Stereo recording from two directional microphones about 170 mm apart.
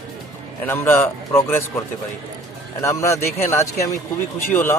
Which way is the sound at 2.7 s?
15° left (ahead or behind).